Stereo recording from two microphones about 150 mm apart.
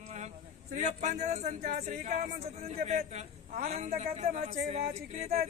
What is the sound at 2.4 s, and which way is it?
A man's voice, 45° right (ahead or behind).